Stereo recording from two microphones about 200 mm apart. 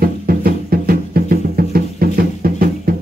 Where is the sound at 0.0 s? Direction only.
45° right (ahead or behind).